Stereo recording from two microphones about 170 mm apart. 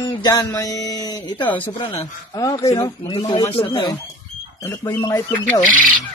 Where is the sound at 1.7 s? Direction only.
30° left (ahead or behind).